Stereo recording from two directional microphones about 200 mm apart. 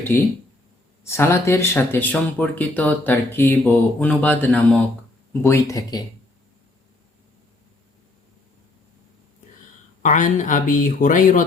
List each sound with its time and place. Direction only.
1.0 s speech: 10° left (ahead or behind)
10.0 s speech: 40° left (ahead or behind)